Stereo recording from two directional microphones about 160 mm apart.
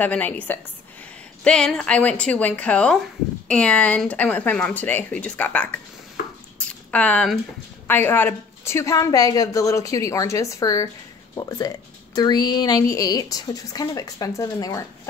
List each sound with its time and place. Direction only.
0.0 s speech: 10° left (ahead or behind)
6.9 s a woman's voice: 10° left (ahead or behind)